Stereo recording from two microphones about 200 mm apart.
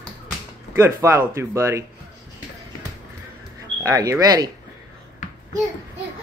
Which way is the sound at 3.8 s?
15° right (ahead or behind).